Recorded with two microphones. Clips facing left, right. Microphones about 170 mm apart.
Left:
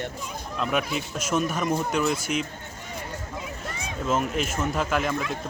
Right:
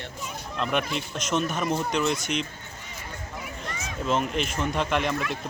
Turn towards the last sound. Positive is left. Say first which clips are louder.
# even
turn(degrees=0)  # may be behind; listen again after turning